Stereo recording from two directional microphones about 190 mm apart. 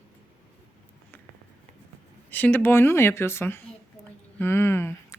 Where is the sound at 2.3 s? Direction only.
10° left (ahead or behind).